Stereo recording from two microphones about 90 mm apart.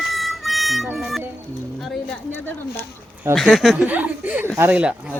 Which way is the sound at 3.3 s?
Centre (ahead or behind).